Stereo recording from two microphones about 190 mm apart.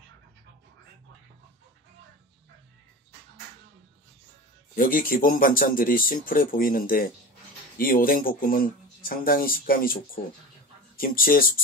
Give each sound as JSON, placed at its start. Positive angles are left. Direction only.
{"t": 4.7, "sound": "speech", "side_deg": 45}